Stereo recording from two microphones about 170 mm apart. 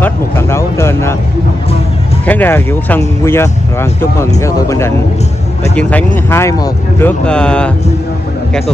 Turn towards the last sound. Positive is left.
turn(degrees=5)  # may be behind; listen again after turning